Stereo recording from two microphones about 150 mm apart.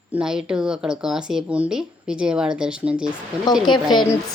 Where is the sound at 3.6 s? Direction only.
30° left (ahead or behind).